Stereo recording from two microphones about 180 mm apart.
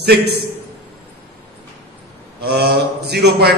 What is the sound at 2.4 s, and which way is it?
Speech, 65° right (ahead or behind).